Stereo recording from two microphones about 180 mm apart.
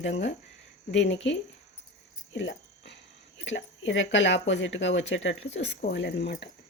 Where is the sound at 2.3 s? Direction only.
90° left.